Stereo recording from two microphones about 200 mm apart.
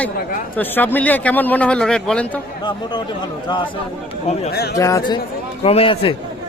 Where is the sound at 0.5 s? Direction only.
10° left (ahead or behind).